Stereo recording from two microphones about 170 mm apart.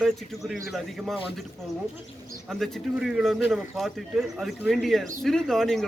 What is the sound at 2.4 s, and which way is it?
A man's voice, centre (ahead or behind).